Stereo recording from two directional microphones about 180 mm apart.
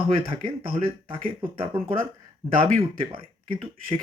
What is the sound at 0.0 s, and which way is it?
Speech, 30° right (ahead or behind).